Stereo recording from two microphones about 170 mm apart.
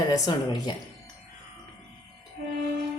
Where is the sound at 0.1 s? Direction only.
25° left (ahead or behind).